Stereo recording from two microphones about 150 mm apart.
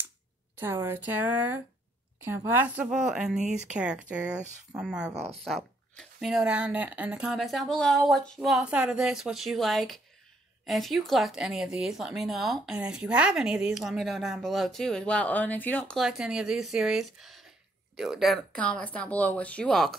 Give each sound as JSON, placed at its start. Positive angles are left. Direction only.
{"t": 0.6, "sound": "speech", "side_deg": -15}
{"t": 5.1, "sound": "speech", "side_deg": -45}
{"t": 5.4, "sound": "speech", "side_deg": 0}
{"t": 16.0, "sound": "speech", "side_deg": -5}